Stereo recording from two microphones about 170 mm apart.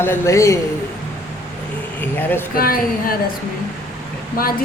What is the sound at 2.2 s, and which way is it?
Speech, 10° left (ahead or behind).